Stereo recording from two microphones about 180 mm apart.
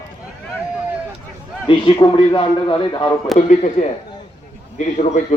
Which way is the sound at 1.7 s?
30° left (ahead or behind).